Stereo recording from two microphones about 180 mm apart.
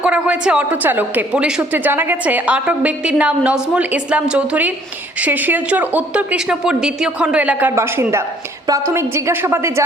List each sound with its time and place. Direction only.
0.0 s a woman's voice: 5° right (ahead or behind)